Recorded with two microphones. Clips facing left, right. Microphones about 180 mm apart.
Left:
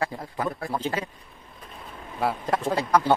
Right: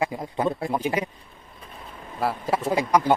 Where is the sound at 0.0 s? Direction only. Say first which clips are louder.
Right 4 dB; 15° right (ahead or behind).